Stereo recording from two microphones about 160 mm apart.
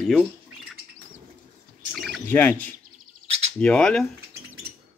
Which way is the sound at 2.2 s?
10° left (ahead or behind).